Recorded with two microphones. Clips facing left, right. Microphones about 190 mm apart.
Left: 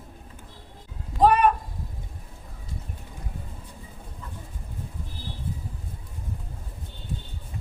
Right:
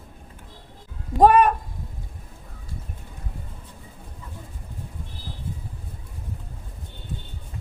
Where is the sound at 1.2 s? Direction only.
50° right (ahead or behind).